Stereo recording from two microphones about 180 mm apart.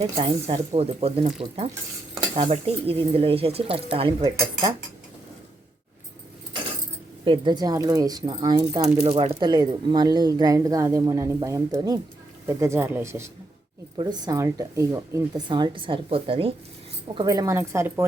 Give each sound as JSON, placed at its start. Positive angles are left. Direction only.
{"t": 0.0, "sound": "speech", "side_deg": -30}
{"t": 7.3, "sound": "speech", "side_deg": -25}
{"t": 8.8, "sound": "speech", "side_deg": -35}
{"t": 17.2, "sound": "speech", "side_deg": -20}